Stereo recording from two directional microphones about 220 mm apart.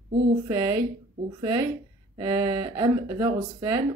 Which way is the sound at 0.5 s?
20° right (ahead or behind).